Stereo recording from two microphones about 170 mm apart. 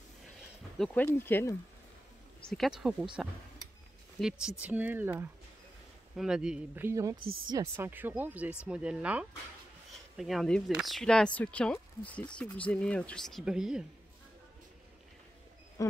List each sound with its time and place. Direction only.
0.7 s speech: centre (ahead or behind)
1.0 s speech: 15° left (ahead or behind)
2.4 s speech: centre (ahead or behind)
4.2 s speech: 5° right (ahead or behind)
15.8 s speech: 20° left (ahead or behind)